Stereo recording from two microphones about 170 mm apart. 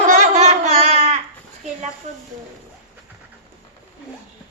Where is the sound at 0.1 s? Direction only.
45° right (ahead or behind).